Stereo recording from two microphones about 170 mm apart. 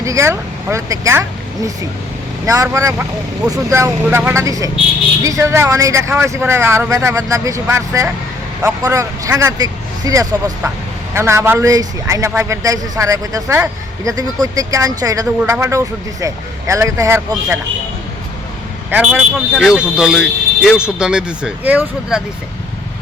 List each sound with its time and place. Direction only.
0.0 s speech: 15° right (ahead or behind)
2.5 s a man's voice: 20° right (ahead or behind)
18.9 s speech: 10° right (ahead or behind)